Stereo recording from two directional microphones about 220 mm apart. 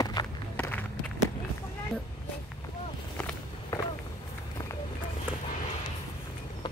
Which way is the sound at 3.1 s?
10° left (ahead or behind).